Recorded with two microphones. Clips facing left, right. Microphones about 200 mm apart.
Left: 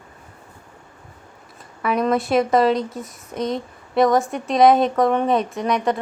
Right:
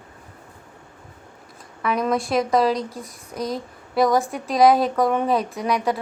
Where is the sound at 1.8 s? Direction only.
Centre (ahead or behind).